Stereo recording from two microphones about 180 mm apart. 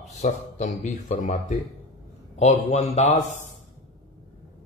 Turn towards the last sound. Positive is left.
turn(degrees=40)  # may be behind; listen again after turning